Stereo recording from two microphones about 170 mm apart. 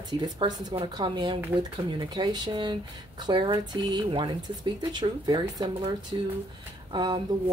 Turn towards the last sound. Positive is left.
turn(degrees=-25)  # may be behind; listen again after turning